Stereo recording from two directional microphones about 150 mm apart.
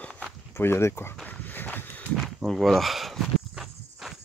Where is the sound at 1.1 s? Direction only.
10° left (ahead or behind).